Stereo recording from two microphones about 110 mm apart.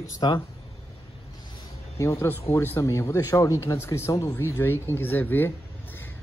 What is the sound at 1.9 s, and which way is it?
Speech, 25° left (ahead or behind).